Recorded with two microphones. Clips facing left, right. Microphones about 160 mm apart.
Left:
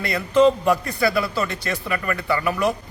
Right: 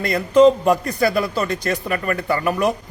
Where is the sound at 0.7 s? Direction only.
45° right (ahead or behind).